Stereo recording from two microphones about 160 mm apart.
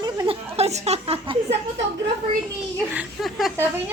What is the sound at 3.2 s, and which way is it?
Speech, centre (ahead or behind).